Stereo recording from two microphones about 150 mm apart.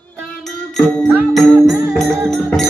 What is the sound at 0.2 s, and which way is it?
Music, centre (ahead or behind).